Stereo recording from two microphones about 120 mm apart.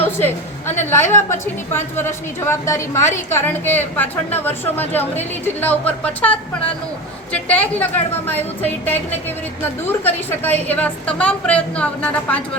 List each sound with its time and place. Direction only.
0.0 s a woman's voice: 15° left (ahead or behind)